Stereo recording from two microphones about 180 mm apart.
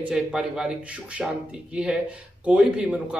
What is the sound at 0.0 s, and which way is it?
Speech, 5° right (ahead or behind).